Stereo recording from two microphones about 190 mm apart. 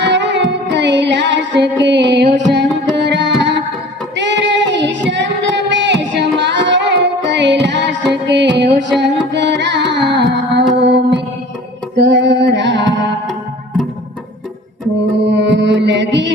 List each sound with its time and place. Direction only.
0.0 s music: 65° right (ahead or behind)
4.1 s child singing: 70° right (ahead or behind)
9.3 s carnatic music: 70° right (ahead or behind)
10.8 s music: 65° right (ahead or behind)
15.2 s mantra: 65° right (ahead or behind)